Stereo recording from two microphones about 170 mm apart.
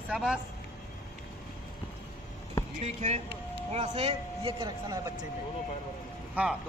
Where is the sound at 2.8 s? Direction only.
40° right (ahead or behind); by 5.2 s 25° right (ahead or behind).